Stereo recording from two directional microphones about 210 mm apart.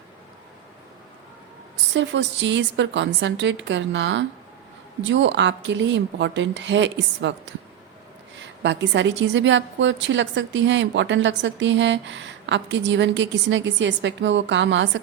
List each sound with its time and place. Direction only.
1.7 s a woman's voice: 60° right (ahead or behind)